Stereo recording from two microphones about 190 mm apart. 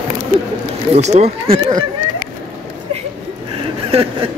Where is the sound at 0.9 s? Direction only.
35° right (ahead or behind).